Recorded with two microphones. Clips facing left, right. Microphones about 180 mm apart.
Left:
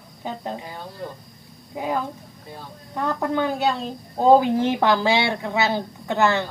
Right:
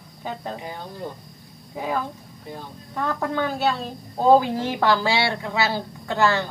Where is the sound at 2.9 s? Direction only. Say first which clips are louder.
Left 2 dB; 15° left (ahead or behind).